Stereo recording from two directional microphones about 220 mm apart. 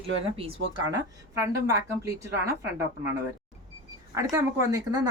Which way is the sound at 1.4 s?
15° right (ahead or behind).